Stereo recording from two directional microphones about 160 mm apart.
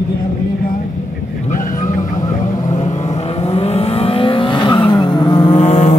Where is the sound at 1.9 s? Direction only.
25° left (ahead or behind).